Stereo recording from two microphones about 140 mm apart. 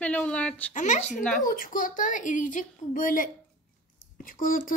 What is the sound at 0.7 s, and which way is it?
Speech, 60° left (ahead or behind).